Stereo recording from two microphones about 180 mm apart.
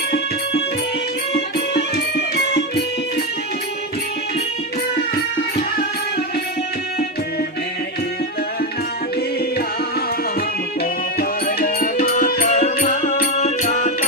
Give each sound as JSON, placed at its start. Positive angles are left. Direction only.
{"t": 1.5, "sound": "music", "side_deg": 65}
{"t": 11.2, "sound": "music", "side_deg": 55}